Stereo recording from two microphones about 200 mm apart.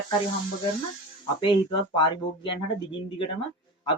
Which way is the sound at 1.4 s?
25° left (ahead or behind).